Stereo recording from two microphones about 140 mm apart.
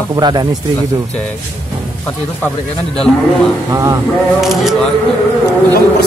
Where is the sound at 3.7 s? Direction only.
25° right (ahead or behind).